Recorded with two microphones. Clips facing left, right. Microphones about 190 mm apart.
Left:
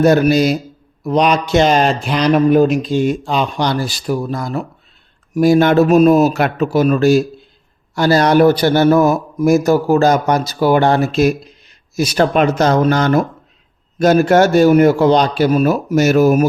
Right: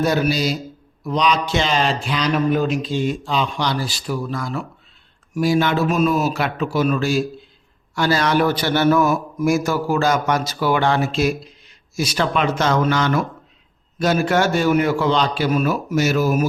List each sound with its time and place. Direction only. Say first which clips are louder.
0.0 s a man's voice: left 8 dB; 50° left (ahead or behind)